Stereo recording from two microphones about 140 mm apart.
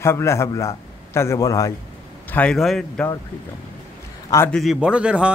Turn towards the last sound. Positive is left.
turn(degrees=-5)  # may be behind; listen again after turning